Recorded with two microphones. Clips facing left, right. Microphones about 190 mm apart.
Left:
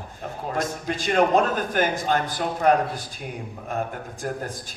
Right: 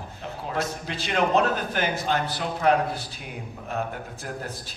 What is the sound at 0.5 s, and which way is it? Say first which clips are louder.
A man's voice: left 2 dB; 50° left (ahead or behind).